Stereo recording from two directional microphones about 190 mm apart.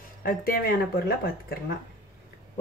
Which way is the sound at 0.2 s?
50° left (ahead or behind).